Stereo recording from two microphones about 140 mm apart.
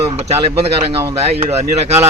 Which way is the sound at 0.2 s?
50° right (ahead or behind).